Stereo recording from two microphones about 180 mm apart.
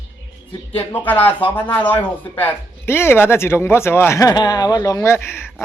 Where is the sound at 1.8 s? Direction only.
10° left (ahead or behind).